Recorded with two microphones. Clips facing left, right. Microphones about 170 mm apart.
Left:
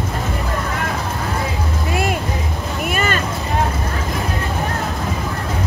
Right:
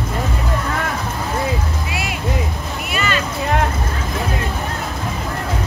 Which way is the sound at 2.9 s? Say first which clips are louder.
Left 2 dB; 50° left (ahead or behind).